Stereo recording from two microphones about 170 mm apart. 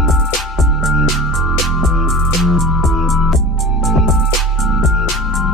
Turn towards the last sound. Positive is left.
turn(degrees=0)  # may be behind; listen again after turning